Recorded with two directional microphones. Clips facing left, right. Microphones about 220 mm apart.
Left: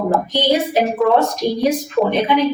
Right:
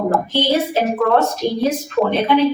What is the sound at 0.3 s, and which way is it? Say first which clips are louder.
Speech: left 1 dB; 15° left (ahead or behind).